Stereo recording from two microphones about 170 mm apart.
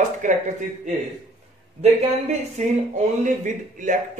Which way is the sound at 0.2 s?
50° right (ahead or behind).